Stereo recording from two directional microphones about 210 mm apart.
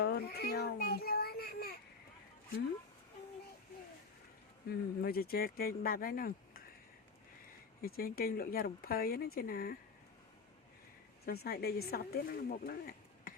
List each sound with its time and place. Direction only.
0.0 s child singing: 50° left (ahead or behind)
4.7 s speech: 45° left (ahead or behind)
7.8 s speech: 45° left (ahead or behind)
11.3 s speech: 50° left (ahead or behind)